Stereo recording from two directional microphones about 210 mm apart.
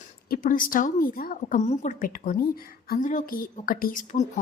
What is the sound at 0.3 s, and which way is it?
A woman's voice, 40° left (ahead or behind).